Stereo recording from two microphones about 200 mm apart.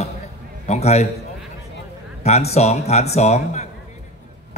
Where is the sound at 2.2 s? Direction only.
35° left (ahead or behind).